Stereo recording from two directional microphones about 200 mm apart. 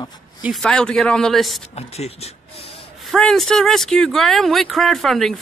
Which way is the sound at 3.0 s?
Centre (ahead or behind).